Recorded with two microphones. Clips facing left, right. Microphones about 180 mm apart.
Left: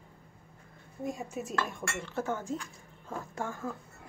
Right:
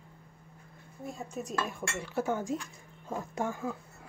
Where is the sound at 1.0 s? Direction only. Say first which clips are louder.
Left 4 dB; 15° left (ahead or behind).